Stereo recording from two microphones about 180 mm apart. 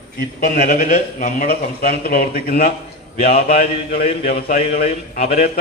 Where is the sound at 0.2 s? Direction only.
55° left (ahead or behind).